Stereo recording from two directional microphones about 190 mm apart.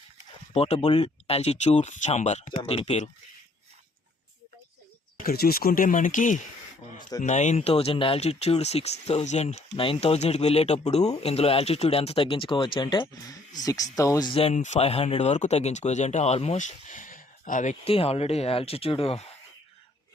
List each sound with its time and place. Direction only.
0.5 s speech: 35° left (ahead or behind)
2.6 s speech: 30° left (ahead or behind)
5.2 s speech: 55° left (ahead or behind); by 19.3 s 30° left (ahead or behind)